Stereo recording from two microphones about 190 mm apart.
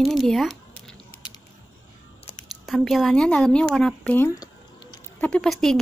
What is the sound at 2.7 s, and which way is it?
A woman's voice, centre (ahead or behind).